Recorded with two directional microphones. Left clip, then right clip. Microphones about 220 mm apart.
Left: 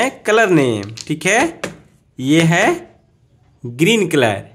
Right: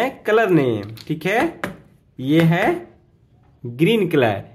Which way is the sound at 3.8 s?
15° left (ahead or behind).